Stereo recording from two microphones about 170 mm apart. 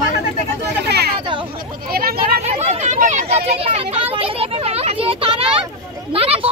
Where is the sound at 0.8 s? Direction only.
75° right (ahead or behind).